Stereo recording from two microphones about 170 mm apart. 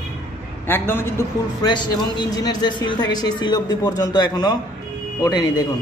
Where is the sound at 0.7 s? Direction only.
10° left (ahead or behind).